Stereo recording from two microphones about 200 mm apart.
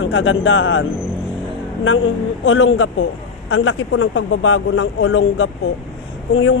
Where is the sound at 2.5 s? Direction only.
70° left (ahead or behind).